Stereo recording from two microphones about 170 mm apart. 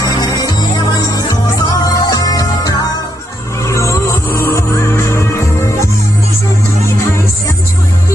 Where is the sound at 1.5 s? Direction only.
20° left (ahead or behind).